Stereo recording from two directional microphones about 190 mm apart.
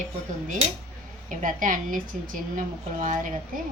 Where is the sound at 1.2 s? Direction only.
45° right (ahead or behind).